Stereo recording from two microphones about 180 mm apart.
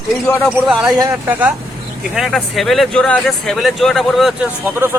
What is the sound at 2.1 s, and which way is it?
Speech, centre (ahead or behind).